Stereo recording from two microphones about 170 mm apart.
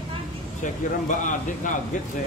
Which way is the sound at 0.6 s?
50° left (ahead or behind).